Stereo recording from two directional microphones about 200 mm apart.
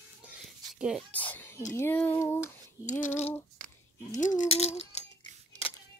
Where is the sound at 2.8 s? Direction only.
40° left (ahead or behind).